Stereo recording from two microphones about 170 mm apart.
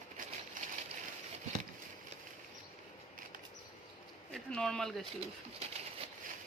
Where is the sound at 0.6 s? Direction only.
50° right (ahead or behind).